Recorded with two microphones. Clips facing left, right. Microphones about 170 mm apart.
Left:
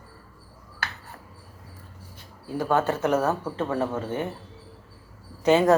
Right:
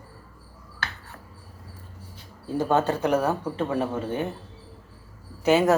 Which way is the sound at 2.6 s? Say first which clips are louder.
Right 1 dB; 20° right (ahead or behind).